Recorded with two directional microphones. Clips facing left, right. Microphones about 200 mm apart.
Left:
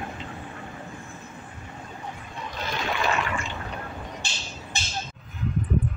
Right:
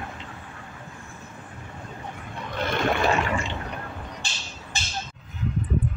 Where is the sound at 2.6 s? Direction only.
55° right (ahead or behind).